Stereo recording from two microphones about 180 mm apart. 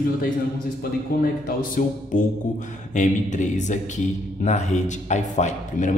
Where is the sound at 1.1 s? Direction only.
50° left (ahead or behind).